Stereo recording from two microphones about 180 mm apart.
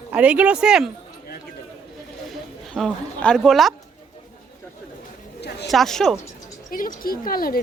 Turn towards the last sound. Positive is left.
turn(degrees=55)  # may be behind; listen again after turning